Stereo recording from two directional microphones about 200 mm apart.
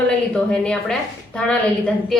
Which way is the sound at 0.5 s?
5° left (ahead or behind).